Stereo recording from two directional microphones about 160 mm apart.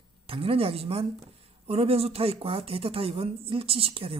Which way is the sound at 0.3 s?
35° right (ahead or behind).